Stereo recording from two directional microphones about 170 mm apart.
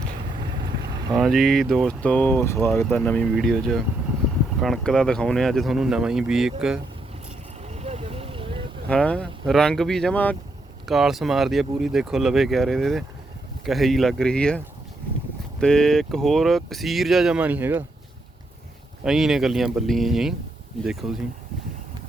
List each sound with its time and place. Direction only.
1.1 s speech: centre (ahead or behind)
7.6 s a sound: 40° right (ahead or behind)
8.9 s speech: 5° left (ahead or behind)
15.6 s speech: 5° left (ahead or behind)
19.0 s speech: centre (ahead or behind)